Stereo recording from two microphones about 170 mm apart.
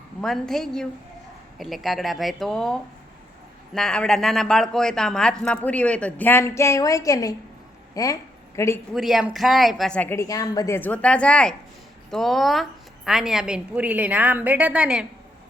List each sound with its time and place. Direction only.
0.2 s a woman's voice: centre (ahead or behind)
8.9 s a woman's voice: centre (ahead or behind)